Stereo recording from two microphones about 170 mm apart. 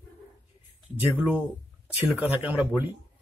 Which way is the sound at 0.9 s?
10° right (ahead or behind).